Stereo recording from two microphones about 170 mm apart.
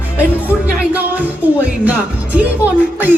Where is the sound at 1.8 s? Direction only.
10° right (ahead or behind).